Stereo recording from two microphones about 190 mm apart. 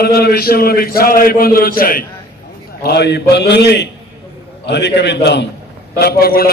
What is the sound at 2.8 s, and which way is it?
A man's voice, 60° left (ahead or behind).